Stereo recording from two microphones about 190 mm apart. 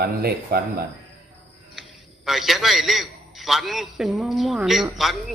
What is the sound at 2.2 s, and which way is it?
A man's voice, centre (ahead or behind).